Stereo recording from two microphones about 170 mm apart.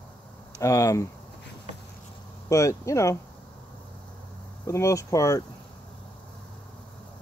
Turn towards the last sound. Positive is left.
turn(degrees=20)  # may be behind; listen again after turning